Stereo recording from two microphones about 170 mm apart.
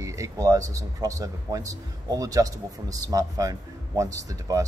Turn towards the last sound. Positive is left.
turn(degrees=-20)  # may be behind; listen again after turning